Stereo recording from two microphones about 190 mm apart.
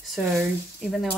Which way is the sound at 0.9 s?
Centre (ahead or behind).